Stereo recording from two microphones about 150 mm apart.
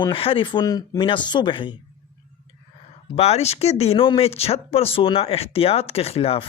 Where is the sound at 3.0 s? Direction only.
45° left (ahead or behind).